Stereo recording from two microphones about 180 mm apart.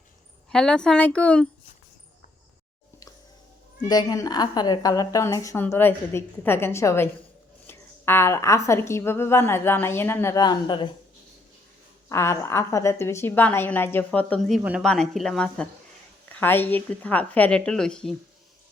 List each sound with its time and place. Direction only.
0.5 s speech: 5° left (ahead or behind)
3.8 s a woman's voice: 20° left (ahead or behind)
12.0 s a woman's voice: 15° left (ahead or behind)